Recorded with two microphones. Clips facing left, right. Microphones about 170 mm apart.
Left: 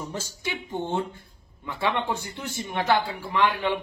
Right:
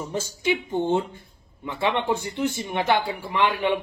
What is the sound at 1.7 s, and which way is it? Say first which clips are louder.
A woman's voice: right 3 dB; 20° right (ahead or behind).